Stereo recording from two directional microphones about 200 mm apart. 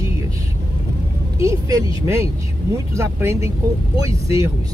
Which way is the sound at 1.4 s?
15° right (ahead or behind).